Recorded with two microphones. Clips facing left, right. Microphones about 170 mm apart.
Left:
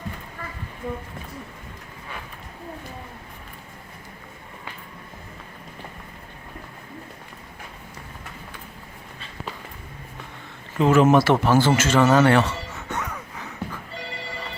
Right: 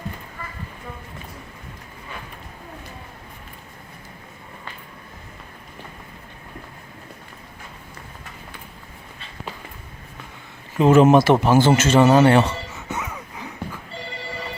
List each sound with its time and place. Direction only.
10.8 s speech: 20° right (ahead or behind)
12.7 s music: 5° right (ahead or behind)